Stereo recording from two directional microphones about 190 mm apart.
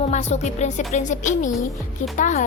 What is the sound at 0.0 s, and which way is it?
A woman's voice, 35° left (ahead or behind).